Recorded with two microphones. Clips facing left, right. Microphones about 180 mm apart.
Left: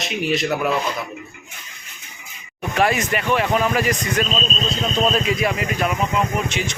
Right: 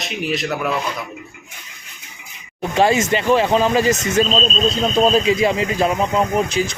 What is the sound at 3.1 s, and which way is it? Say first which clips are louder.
Speech: right 4 dB; 25° right (ahead or behind).